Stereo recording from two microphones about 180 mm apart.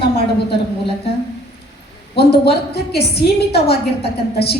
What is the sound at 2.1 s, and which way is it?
A woman's voice, 65° left (ahead or behind).